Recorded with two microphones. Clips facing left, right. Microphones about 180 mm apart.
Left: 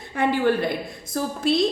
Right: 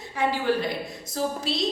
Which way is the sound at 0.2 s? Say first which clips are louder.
Left 4 dB; 55° left (ahead or behind).